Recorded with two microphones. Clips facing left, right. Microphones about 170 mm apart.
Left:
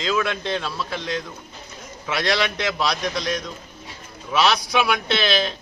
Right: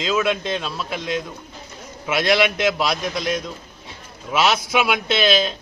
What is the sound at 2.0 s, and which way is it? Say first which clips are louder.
Speech: right 4 dB; 15° right (ahead or behind).